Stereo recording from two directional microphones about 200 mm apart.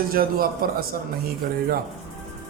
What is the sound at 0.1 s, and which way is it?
Speech, 45° right (ahead or behind).